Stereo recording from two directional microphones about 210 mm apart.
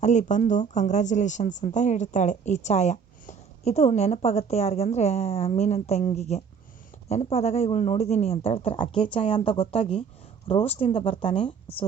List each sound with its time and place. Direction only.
0.0 s speech: 35° left (ahead or behind)